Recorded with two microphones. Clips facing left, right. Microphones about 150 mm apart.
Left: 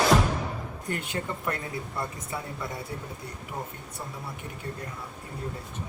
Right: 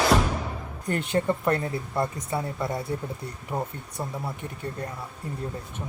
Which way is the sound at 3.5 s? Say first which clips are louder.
Right 7 dB; 60° right (ahead or behind).